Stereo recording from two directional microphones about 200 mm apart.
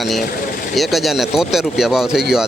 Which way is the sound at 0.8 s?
Centre (ahead or behind).